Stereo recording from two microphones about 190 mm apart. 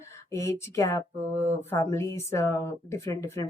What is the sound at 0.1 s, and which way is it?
Speech, 15° left (ahead or behind).